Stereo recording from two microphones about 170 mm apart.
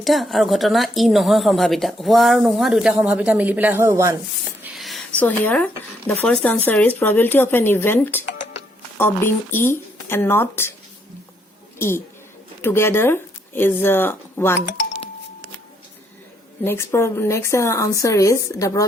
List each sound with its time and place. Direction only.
0.0 s speech: centre (ahead or behind); by 4.1 s 15° right (ahead or behind)
4.7 s speech: centre (ahead or behind)
11.8 s speech: 15° left (ahead or behind)
16.6 s speech: 15° left (ahead or behind)